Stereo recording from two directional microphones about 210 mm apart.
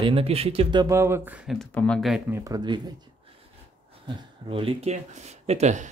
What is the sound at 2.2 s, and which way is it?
Speech, 15° right (ahead or behind).